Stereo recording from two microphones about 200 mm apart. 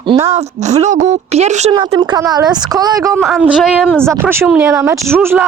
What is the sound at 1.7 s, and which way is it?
A woman's voice, 20° right (ahead or behind).